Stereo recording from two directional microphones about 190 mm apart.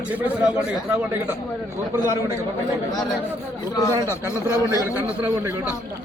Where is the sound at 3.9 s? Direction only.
15° right (ahead or behind).